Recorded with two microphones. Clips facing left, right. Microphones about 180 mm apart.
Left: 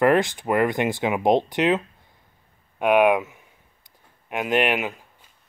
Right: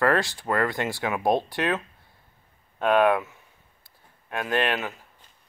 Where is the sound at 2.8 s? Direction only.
15° left (ahead or behind).